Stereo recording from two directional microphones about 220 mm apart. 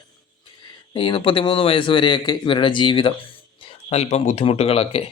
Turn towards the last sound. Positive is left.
turn(degrees=25)  # may be behind; listen again after turning